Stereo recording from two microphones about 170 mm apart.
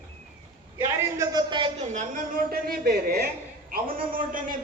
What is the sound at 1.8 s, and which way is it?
Speech, 45° right (ahead or behind).